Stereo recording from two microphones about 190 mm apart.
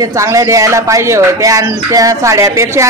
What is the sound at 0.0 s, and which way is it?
Speech, 15° right (ahead or behind).